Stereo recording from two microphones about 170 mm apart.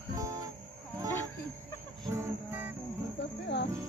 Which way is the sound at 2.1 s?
15° right (ahead or behind).